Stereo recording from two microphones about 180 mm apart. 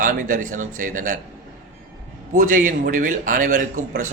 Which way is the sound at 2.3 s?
45° right (ahead or behind).